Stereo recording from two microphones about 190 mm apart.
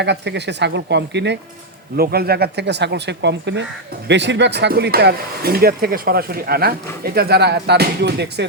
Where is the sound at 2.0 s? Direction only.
55° right (ahead or behind).